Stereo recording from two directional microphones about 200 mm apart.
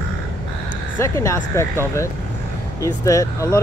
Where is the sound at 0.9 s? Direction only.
15° left (ahead or behind).